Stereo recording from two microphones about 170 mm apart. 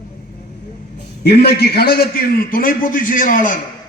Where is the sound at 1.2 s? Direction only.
70° left (ahead or behind); by 3.6 s 50° left (ahead or behind).